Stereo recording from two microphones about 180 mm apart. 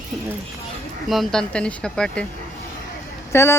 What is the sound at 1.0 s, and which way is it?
Speech, centre (ahead or behind).